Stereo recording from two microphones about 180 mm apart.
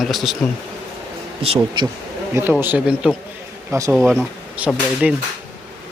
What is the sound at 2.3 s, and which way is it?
Speech, 10° right (ahead or behind).